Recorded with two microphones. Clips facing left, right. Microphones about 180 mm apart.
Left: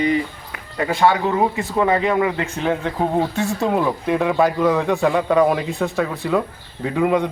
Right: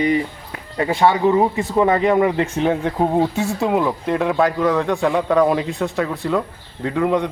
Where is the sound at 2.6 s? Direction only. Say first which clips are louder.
Right 1 dB; 15° right (ahead or behind).